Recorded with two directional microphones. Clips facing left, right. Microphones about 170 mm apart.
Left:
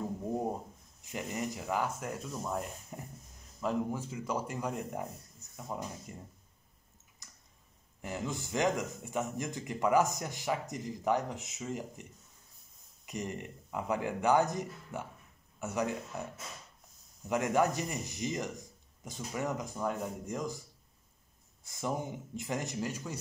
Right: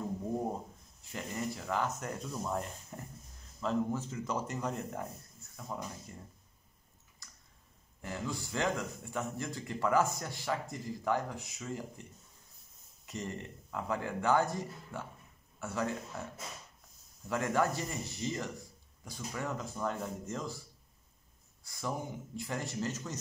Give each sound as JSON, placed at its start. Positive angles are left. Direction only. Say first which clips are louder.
{"t": 1.0, "sound": "a man's voice", "louder": "left 1 dB", "side_deg": 15}
{"t": 7.2, "sound": "clicking", "louder": "even", "side_deg": 20}
{"t": 8.0, "sound": "a man's voice", "louder": "left 1 dB", "side_deg": 20}
{"t": 17.3, "sound": "a man's voice", "louder": "left 2 dB", "side_deg": 15}
{"t": 21.6, "sound": "a man's voice", "louder": "left 3 dB", "side_deg": 20}